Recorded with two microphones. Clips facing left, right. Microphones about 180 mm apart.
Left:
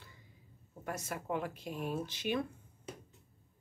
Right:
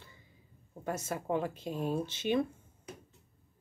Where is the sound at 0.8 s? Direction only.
25° right (ahead or behind).